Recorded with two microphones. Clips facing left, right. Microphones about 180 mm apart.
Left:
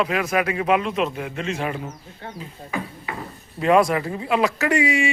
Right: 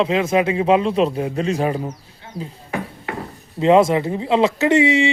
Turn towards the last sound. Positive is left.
turn(degrees=-25)  # may be behind; listen again after turning